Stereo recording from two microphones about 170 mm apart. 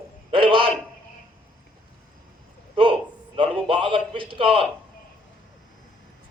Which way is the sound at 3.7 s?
30° right (ahead or behind).